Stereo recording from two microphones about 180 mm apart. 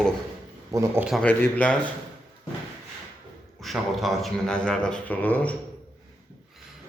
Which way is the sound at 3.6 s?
Centre (ahead or behind).